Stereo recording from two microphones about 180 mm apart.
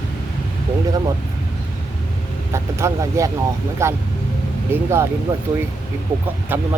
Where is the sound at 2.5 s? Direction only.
15° right (ahead or behind).